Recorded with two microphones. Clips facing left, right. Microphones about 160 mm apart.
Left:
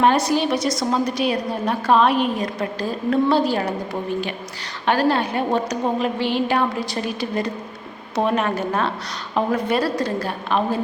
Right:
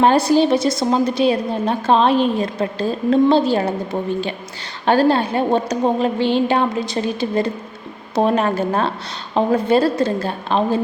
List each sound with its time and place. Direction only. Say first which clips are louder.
0.0 s a woman's voice: right 4 dB; 30° right (ahead or behind)
4.9 s a woman's voice: right 4 dB; 30° right (ahead or behind)